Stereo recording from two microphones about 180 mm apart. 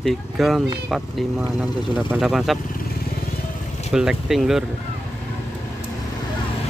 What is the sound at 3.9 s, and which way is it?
Speech, 5° right (ahead or behind).